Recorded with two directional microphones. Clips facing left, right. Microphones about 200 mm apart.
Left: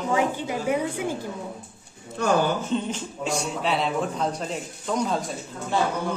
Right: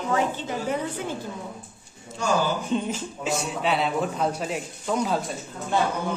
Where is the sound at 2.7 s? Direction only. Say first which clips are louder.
Even; 5° right (ahead or behind).